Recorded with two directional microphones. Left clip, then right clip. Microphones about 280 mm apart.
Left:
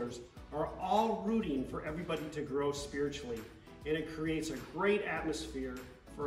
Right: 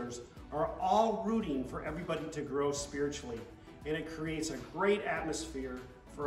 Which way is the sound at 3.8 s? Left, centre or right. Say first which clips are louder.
Left 2 dB; centre.